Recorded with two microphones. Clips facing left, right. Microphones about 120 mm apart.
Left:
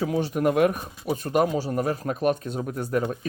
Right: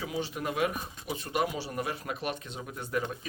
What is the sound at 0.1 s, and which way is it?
Speech, 50° left (ahead or behind).